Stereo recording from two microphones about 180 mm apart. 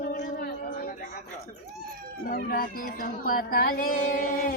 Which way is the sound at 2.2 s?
55° left (ahead or behind).